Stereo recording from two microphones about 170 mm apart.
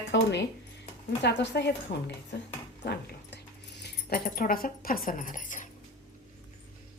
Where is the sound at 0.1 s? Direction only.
90° left; by 5.6 s 50° left (ahead or behind).